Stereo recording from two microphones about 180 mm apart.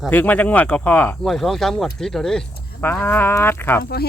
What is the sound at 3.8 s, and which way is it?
Speech, 60° left (ahead or behind).